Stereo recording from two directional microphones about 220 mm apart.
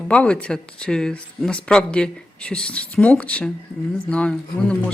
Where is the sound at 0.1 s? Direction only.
5° left (ahead or behind).